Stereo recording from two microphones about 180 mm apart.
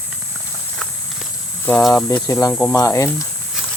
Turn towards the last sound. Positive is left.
turn(degrees=15)  # may be behind; listen again after turning